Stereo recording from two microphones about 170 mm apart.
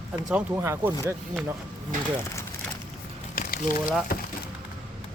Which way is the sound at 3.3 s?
60° left (ahead or behind).